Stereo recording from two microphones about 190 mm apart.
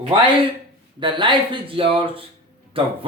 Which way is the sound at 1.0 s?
25° right (ahead or behind).